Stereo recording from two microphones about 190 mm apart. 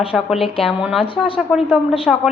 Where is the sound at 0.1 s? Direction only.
5° right (ahead or behind).